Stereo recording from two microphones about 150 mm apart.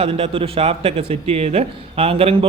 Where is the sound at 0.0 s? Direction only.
40° right (ahead or behind).